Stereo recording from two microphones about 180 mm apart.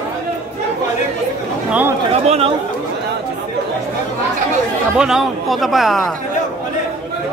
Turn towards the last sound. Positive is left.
turn(degrees=0)  # may be behind; listen again after turning